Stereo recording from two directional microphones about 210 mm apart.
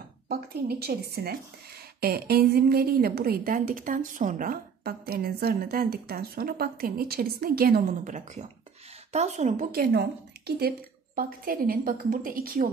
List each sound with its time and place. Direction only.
0.3 s a woman's voice: 45° right (ahead or behind)